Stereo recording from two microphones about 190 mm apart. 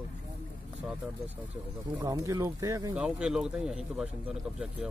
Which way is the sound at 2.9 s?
5° right (ahead or behind).